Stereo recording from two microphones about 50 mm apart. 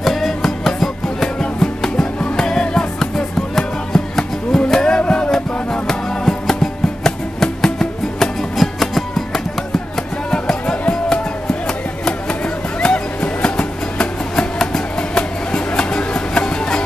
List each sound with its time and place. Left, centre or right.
0.0 s music: centre; by 5.3 s left
5.3 s music: centre
10.3 s music: centre